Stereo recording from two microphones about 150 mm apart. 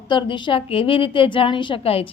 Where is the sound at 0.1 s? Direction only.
35° left (ahead or behind).